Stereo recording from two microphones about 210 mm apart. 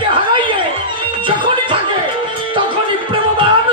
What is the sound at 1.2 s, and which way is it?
Music, 25° right (ahead or behind).